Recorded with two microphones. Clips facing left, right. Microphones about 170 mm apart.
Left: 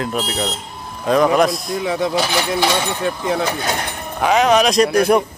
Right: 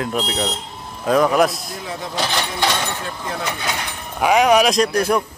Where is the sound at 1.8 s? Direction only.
75° left (ahead or behind).